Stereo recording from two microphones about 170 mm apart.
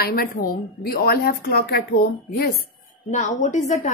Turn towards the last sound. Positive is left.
turn(degrees=45)  # may be behind; listen again after turning